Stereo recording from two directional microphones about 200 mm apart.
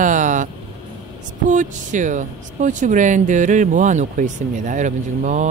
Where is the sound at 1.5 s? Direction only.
40° right (ahead or behind).